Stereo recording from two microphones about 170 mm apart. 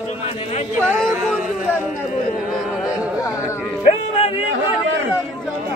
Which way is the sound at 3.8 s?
35° left (ahead or behind).